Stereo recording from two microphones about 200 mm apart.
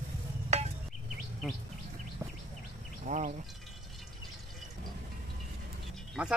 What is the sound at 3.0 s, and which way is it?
Speech, 40° right (ahead or behind).